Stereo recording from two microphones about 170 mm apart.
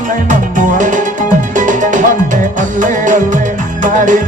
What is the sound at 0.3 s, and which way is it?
Music, 50° right (ahead or behind).